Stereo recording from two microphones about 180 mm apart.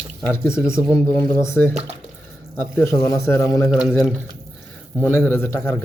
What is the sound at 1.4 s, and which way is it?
A man's voice, 15° left (ahead or behind).